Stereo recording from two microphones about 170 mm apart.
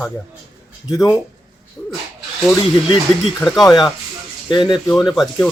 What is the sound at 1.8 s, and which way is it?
Speech, 5° left (ahead or behind).